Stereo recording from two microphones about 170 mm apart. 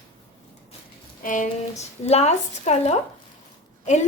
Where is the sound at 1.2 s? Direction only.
50° left (ahead or behind).